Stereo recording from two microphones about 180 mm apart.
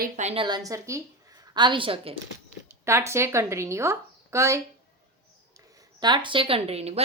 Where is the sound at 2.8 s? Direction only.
15° right (ahead or behind).